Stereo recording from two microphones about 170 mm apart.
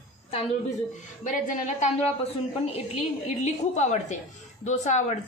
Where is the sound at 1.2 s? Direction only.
50° left (ahead or behind).